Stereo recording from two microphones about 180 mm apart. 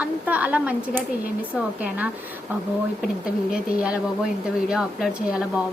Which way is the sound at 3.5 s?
5° right (ahead or behind).